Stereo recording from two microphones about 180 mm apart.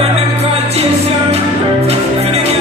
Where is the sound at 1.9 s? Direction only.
35° right (ahead or behind).